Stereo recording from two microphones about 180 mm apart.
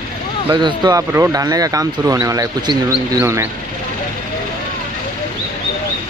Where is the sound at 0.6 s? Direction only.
25° right (ahead or behind).